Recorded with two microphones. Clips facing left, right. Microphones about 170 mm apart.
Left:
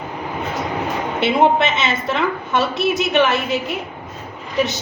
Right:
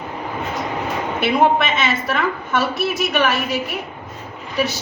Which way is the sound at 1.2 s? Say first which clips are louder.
Left 1 dB; 20° left (ahead or behind).